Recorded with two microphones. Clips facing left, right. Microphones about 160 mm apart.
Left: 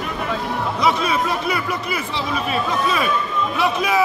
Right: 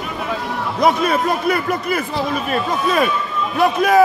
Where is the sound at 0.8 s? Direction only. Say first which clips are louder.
Right 4 dB; 50° right (ahead or behind).